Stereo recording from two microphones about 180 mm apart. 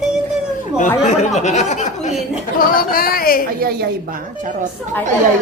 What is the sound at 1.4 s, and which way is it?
Speech, 40° left (ahead or behind).